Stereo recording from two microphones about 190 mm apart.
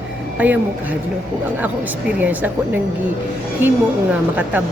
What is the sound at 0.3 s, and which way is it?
Speech, 10° right (ahead or behind).